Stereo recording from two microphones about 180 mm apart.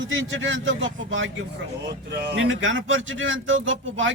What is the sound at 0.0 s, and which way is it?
Speech, 90° right.